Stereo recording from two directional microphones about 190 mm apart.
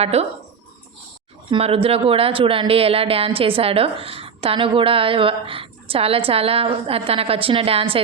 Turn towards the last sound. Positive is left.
turn(degrees=-30)  # may be behind; listen again after turning